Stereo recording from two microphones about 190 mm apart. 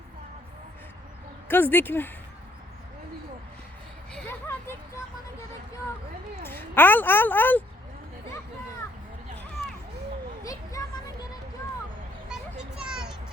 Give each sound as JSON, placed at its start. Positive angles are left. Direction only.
{"t": 1.5, "sound": "speech", "side_deg": 10}
{"t": 4.1, "sound": "vehicle", "side_deg": 10}
{"t": 6.4, "sound": "speech", "side_deg": 10}
{"t": 10.4, "sound": "a sound", "side_deg": 20}
{"t": 12.3, "sound": "children playing", "side_deg": -5}